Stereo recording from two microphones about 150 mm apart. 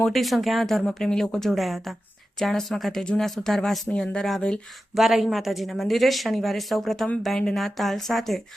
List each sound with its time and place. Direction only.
0.0 s speech: centre (ahead or behind)